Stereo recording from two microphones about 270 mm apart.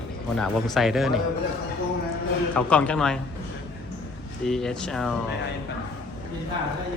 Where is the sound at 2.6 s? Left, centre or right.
Centre.